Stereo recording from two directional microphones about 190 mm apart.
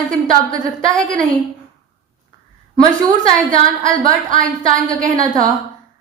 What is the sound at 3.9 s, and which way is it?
Speech, 45° right (ahead or behind).